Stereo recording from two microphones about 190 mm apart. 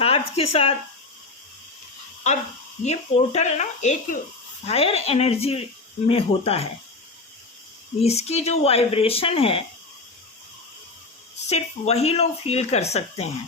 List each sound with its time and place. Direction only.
0.0 s speech: 30° left (ahead or behind)
2.8 s speech: 35° left (ahead or behind)
8.0 s speech: 35° left (ahead or behind)
11.4 s speech: 35° left (ahead or behind)